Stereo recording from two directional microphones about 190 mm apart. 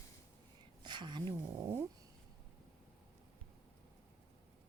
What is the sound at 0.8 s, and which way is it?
Speech, 25° right (ahead or behind).